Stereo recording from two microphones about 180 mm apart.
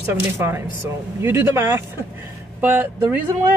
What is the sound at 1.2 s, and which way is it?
Speech, 15° right (ahead or behind).